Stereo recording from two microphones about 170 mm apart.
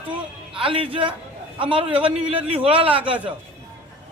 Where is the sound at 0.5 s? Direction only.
30° right (ahead or behind).